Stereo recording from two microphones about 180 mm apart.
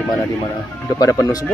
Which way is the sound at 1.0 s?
20° left (ahead or behind).